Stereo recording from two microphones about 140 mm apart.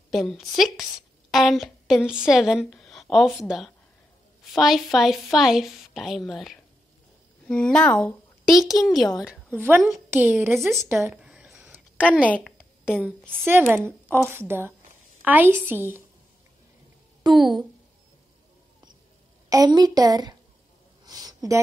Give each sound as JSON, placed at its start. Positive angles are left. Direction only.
{"t": 0.1, "sound": "a woman's voice", "side_deg": 0}
{"t": 10.0, "sound": "a woman's voice", "side_deg": -15}
{"t": 11.1, "sound": "a sound", "side_deg": -5}
{"t": 12.0, "sound": "a woman's voice", "side_deg": 10}
{"t": 12.4, "sound": "a sound", "side_deg": -5}
{"t": 13.4, "sound": "a woman's voice", "side_deg": -15}
{"t": 17.3, "sound": "a woman's voice", "side_deg": 0}
{"t": 19.5, "sound": "a woman's voice", "side_deg": -30}
{"t": 21.0, "sound": "a sound", "side_deg": -25}